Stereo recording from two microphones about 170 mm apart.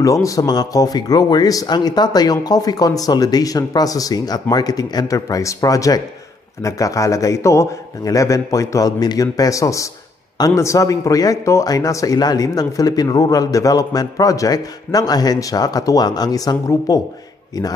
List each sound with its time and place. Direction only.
0.0 s a man's voice: 20° left (ahead or behind)